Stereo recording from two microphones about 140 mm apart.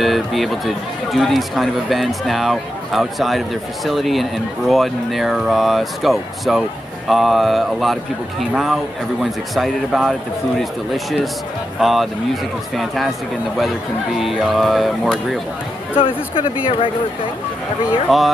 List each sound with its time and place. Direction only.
0.0 s speech: centre (ahead or behind)
9.2 s speech: centre (ahead or behind)
14.2 s speech: centre (ahead or behind)
16.0 s speech: 40° left (ahead or behind)
18.1 s speech: centre (ahead or behind)